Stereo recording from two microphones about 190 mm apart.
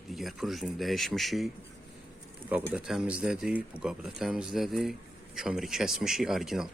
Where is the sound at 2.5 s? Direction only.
5° right (ahead or behind).